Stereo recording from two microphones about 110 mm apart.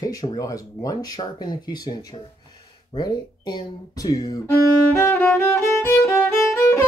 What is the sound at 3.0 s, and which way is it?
Speech, 40° left (ahead or behind).